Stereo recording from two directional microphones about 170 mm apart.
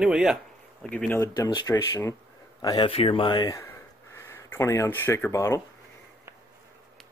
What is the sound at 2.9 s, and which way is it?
Speech, 35° left (ahead or behind).